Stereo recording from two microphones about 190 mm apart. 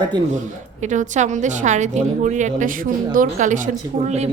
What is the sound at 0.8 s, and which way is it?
A woman's voice, 40° right (ahead or behind).